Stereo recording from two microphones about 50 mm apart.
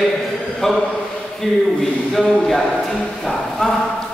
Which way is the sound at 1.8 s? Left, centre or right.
Centre.